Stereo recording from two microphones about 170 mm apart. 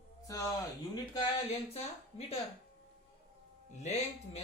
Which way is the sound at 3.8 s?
40° left (ahead or behind).